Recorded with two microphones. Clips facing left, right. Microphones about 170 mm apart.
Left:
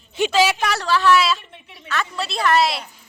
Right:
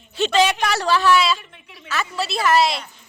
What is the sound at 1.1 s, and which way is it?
A woman's voice, centre (ahead or behind).